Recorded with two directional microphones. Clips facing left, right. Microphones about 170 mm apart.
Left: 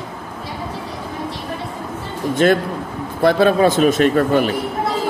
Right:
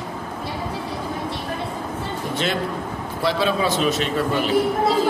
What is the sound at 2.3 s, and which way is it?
A man's voice, 50° left (ahead or behind).